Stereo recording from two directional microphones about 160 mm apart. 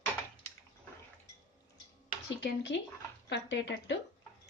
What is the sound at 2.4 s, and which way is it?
A woman's voice, 90° left.